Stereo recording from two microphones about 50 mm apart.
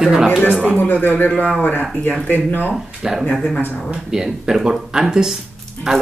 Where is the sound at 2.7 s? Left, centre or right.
Centre.